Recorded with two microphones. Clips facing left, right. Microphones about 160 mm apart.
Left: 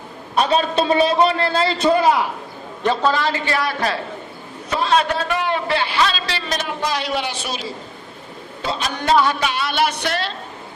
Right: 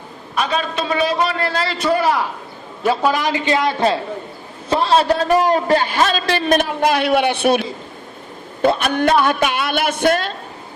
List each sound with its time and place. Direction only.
0.3 s a man's voice: 30° left (ahead or behind)
2.8 s a man's voice: 10° right (ahead or behind); by 10.3 s 50° right (ahead or behind)